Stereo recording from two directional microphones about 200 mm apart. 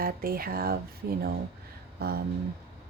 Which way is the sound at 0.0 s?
45° right (ahead or behind).